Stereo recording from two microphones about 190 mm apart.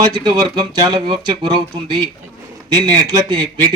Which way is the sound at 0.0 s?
20° right (ahead or behind).